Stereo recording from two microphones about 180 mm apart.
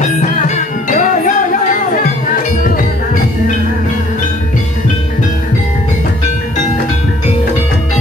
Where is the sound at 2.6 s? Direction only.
50° left (ahead or behind).